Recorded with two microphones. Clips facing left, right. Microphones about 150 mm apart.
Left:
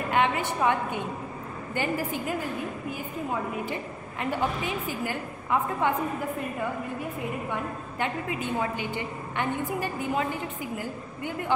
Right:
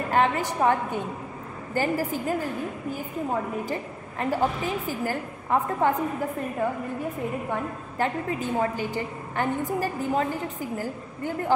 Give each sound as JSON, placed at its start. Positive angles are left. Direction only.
{"t": 0.1, "sound": "a woman's voice", "side_deg": -40}
{"t": 7.4, "sound": "a woman's voice", "side_deg": -40}